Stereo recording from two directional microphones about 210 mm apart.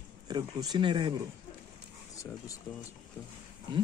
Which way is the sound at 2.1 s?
15° left (ahead or behind).